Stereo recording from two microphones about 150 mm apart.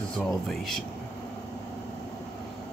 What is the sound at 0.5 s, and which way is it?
Speech, centre (ahead or behind).